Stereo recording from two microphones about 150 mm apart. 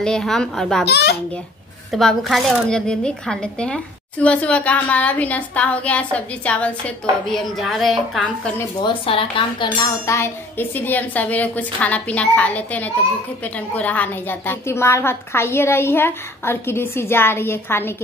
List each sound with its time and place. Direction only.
0.0 s a child's voice: 5° left (ahead or behind)
0.8 s a child's voice: 90° left
1.9 s speech: centre (ahead or behind)
8.8 s cutlery: 35° left (ahead or behind)
10.0 s speech: 20° left (ahead or behind)